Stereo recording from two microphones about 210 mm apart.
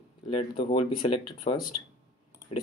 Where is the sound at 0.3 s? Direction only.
25° left (ahead or behind).